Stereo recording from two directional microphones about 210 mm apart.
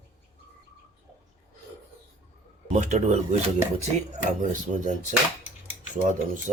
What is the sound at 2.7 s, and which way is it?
Speech, 35° right (ahead or behind).